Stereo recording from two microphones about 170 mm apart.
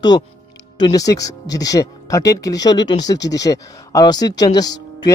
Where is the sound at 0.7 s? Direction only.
20° left (ahead or behind).